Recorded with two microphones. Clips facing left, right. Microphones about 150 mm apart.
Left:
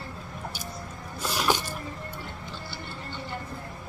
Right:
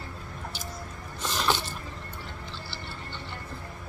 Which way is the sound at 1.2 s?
10° left (ahead or behind).